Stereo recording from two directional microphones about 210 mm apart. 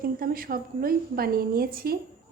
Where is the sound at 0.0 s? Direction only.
45° right (ahead or behind).